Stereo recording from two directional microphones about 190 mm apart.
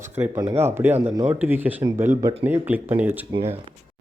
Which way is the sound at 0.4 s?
10° right (ahead or behind).